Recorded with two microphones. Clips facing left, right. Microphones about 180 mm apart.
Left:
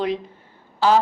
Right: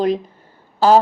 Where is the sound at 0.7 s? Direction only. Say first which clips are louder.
Right 5 dB; 40° right (ahead or behind).